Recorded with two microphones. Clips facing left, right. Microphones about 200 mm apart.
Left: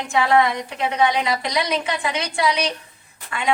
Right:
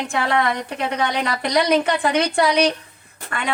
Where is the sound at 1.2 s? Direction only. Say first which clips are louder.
Right 3 dB; 50° right (ahead or behind).